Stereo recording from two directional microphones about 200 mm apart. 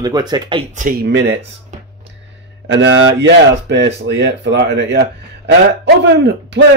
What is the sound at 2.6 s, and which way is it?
A man's voice, 65° right (ahead or behind).